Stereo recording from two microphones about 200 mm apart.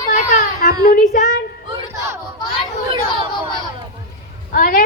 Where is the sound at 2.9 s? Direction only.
25° right (ahead or behind).